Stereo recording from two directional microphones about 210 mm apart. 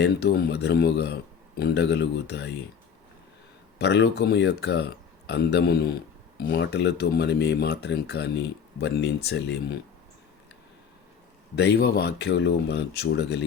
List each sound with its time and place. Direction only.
0.0 s speech: 50° left (ahead or behind)
3.8 s speech: 55° left (ahead or behind)
11.5 s speech: 50° left (ahead or behind)